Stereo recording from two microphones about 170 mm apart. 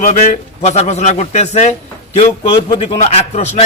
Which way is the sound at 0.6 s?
40° left (ahead or behind).